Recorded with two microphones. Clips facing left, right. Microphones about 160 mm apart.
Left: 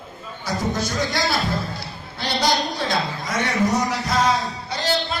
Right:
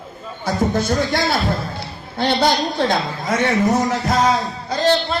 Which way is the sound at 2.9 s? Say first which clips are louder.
Right 4 dB; 55° right (ahead or behind).